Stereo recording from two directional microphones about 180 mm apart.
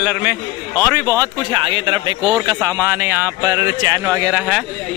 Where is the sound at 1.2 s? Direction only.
25° right (ahead or behind).